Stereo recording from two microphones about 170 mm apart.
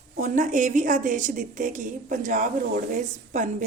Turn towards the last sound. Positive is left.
turn(degrees=-45)  # may be behind; listen again after turning